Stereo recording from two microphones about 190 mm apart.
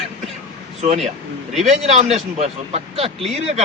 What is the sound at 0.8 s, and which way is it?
Speech, 35° right (ahead or behind).